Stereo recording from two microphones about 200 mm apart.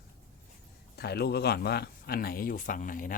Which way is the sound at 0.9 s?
55° left (ahead or behind).